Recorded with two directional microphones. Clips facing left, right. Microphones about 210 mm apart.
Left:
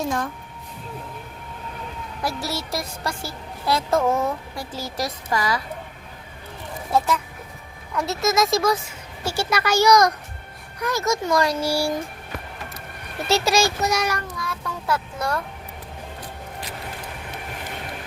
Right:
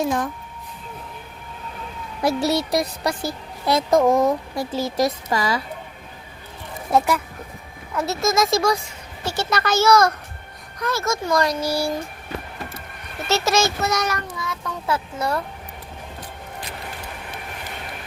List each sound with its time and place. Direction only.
2.2 s a woman's voice: 20° right (ahead or behind)
6.9 s a woman's voice: 15° right (ahead or behind)
7.9 s speech: centre (ahead or behind)
13.2 s speech: 15° left (ahead or behind)
14.3 s a child's voice: centre (ahead or behind)